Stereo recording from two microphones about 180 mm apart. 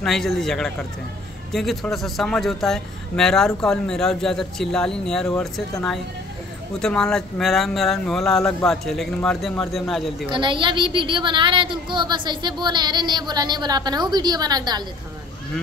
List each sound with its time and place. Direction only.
0.0 s a man's voice: centre (ahead or behind)
6.8 s a man's voice: 5° left (ahead or behind)
10.3 s a woman's voice: 25° right (ahead or behind)